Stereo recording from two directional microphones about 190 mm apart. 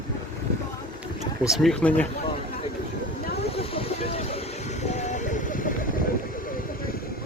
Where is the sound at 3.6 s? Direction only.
30° left (ahead or behind).